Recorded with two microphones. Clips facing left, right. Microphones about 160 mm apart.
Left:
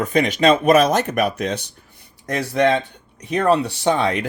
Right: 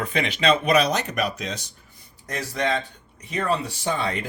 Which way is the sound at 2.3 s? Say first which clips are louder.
Left 8 dB; 70° left (ahead or behind).